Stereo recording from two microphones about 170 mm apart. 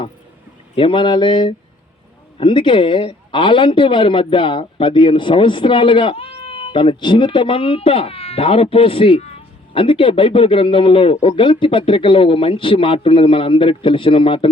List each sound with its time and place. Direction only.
0.8 s speech: 30° left (ahead or behind)